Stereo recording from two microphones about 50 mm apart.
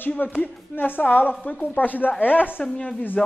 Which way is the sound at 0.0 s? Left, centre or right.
Left.